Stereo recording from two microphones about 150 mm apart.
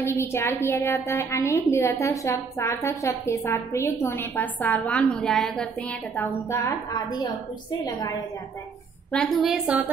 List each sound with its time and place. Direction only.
0.0 s a woman's voice: 15° left (ahead or behind)
9.1 s a woman's voice: centre (ahead or behind)